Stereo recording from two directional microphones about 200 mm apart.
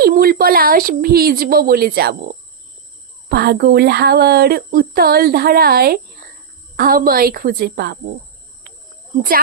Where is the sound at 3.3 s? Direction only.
55° right (ahead or behind).